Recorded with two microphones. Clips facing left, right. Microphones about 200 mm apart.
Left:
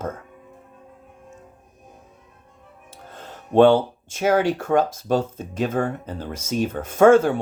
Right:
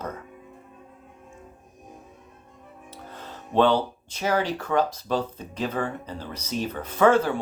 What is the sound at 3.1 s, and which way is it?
Speech, 50° left (ahead or behind).